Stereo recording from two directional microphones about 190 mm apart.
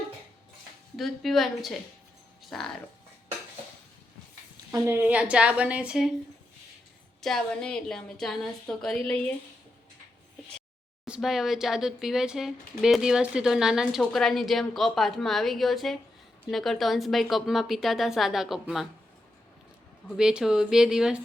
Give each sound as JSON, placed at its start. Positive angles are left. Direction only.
{"t": 0.9, "sound": "speech", "side_deg": 0}
{"t": 2.4, "sound": "a sound", "side_deg": 0}
{"t": 4.7, "sound": "a woman's voice", "side_deg": -10}
{"t": 7.2, "sound": "speech", "side_deg": 0}
{"t": 11.0, "sound": "speech", "side_deg": -5}
{"t": 20.1, "sound": "speech", "side_deg": -5}